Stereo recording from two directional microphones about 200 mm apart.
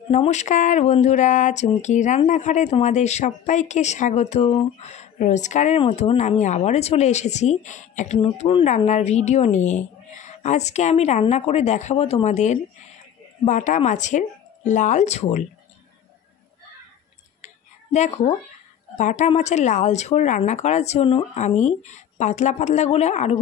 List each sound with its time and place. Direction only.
0.1 s speech: 35° left (ahead or behind)
17.9 s speech: 35° left (ahead or behind)